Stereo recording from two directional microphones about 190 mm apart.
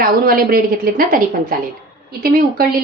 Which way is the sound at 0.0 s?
50° right (ahead or behind).